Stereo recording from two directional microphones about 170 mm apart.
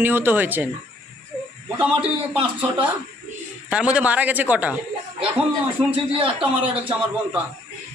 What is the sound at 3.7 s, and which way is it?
A man's voice, 5° right (ahead or behind).